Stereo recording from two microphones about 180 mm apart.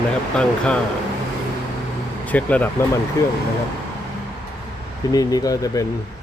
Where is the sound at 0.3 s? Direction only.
5° left (ahead or behind).